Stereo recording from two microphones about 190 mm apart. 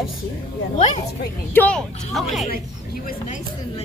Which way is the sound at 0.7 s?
35° left (ahead or behind).